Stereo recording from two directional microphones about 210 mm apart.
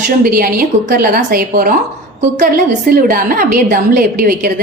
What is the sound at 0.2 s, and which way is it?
A woman's voice, 45° right (ahead or behind).